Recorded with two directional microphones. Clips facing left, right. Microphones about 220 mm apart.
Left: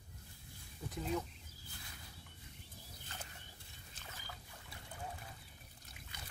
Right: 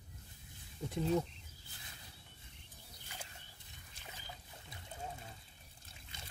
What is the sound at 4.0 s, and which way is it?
Boat, 20° right (ahead or behind).